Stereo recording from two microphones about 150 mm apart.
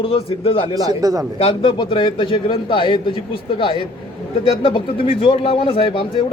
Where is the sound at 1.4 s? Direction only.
35° left (ahead or behind).